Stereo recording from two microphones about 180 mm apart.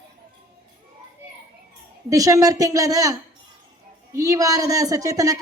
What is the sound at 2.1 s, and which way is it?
A woman's voice, 20° right (ahead or behind).